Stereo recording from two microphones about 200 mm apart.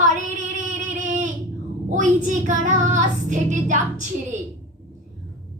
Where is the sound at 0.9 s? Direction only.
40° right (ahead or behind).